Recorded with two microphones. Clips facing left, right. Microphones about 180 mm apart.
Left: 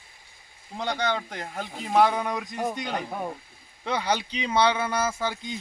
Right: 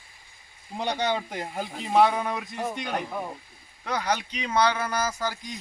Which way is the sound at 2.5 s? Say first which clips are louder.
Left 2 dB; 15° left (ahead or behind).